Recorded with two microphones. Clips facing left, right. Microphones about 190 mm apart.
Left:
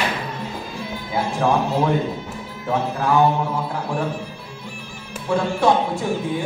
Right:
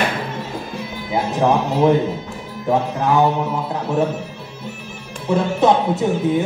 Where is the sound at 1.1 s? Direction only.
20° right (ahead or behind).